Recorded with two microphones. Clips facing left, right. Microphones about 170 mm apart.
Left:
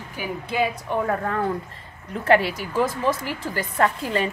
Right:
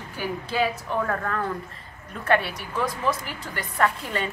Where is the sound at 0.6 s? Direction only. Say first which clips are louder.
Left 2 dB; 25° left (ahead or behind).